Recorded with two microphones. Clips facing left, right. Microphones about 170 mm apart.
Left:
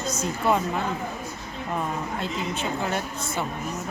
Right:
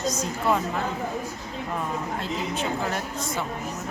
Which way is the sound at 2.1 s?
Centre (ahead or behind).